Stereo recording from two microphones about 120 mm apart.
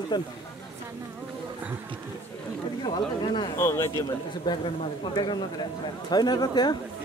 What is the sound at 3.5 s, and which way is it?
Speech, 20° left (ahead or behind).